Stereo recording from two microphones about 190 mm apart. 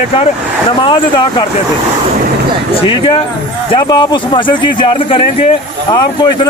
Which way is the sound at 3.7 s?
25° left (ahead or behind).